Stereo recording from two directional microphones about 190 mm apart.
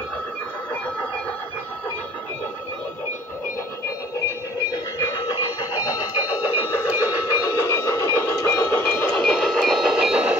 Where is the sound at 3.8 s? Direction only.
15° left (ahead or behind).